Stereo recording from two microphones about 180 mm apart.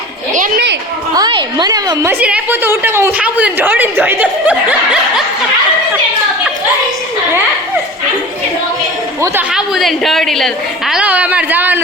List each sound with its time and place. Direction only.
0.3 s a sound: 50° right (ahead or behind)
1.1 s a woman's voice: 25° right (ahead or behind); by 4.5 s 10° right (ahead or behind)
9.5 s a woman's voice: centre (ahead or behind)